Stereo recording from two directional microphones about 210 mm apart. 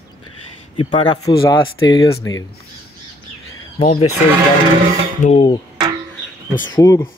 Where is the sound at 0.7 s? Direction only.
25° left (ahead or behind).